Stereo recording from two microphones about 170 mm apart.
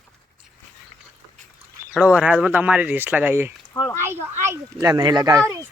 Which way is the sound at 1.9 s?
5° right (ahead or behind).